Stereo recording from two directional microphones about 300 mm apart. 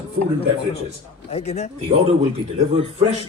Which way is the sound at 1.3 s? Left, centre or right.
Left.